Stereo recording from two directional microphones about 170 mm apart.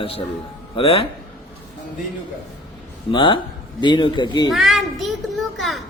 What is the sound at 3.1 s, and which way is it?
Speech, 30° left (ahead or behind).